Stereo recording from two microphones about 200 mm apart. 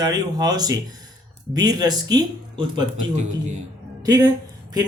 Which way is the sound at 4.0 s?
20° right (ahead or behind).